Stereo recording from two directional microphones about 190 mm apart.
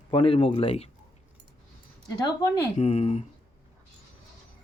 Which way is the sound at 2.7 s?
35° left (ahead or behind).